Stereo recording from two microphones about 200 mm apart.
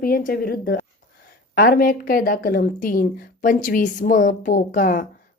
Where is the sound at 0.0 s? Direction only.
45° left (ahead or behind).